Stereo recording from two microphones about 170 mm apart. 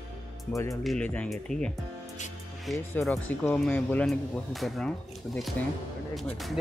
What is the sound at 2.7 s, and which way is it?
Speech, centre (ahead or behind).